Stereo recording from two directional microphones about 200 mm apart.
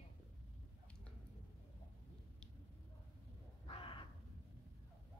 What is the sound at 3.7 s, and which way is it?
Crow, 25° left (ahead or behind).